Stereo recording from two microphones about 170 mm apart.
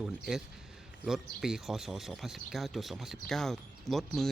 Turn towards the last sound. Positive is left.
turn(degrees=0)  # may be behind; listen again after turning